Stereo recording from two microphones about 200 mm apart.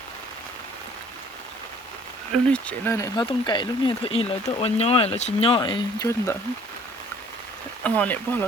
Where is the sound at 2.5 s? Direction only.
10° left (ahead or behind); by 6.1 s 25° left (ahead or behind).